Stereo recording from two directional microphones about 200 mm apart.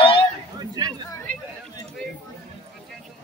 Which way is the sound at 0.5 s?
20° right (ahead or behind).